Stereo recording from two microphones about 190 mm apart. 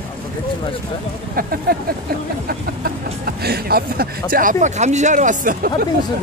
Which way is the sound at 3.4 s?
55° right (ahead or behind).